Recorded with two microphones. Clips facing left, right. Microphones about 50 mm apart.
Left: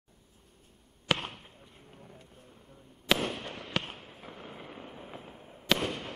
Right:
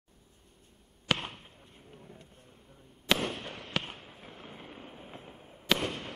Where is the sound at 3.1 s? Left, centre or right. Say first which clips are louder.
Left 1 dB; centre.